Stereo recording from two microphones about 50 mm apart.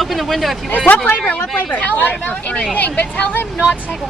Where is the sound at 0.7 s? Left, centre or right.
Left.